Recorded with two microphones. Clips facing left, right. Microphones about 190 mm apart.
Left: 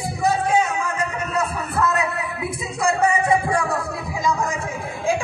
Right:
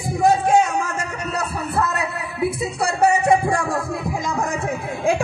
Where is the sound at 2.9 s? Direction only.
45° right (ahead or behind).